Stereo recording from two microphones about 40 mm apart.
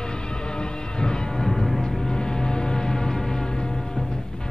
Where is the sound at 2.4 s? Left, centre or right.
Centre.